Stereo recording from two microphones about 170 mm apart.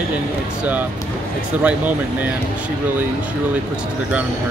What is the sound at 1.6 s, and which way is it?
Speech, 10° right (ahead or behind).